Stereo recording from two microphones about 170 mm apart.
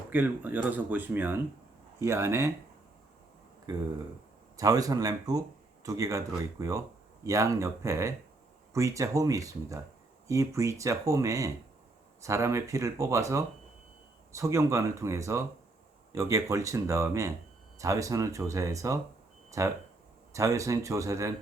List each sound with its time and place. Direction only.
0.1 s speech: 10° right (ahead or behind)
3.7 s speech: 25° right (ahead or behind)